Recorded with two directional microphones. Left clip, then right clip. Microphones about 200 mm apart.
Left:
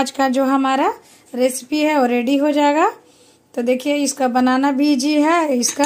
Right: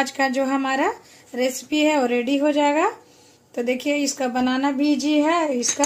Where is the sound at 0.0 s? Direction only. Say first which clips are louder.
Left 4 dB; 35° left (ahead or behind).